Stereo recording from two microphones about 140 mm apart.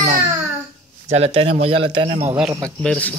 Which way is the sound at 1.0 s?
50° right (ahead or behind).